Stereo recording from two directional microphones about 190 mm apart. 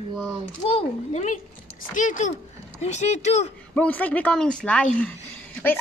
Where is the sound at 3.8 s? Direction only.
10° left (ahead or behind).